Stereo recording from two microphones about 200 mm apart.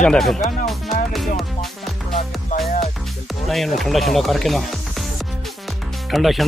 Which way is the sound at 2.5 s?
40° left (ahead or behind).